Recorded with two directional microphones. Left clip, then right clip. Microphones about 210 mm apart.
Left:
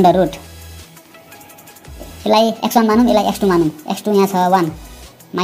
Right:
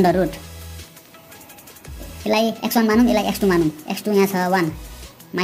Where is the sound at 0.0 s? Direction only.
5° left (ahead or behind).